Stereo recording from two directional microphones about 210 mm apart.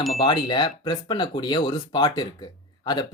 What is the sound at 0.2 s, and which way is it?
Speech, 20° left (ahead or behind).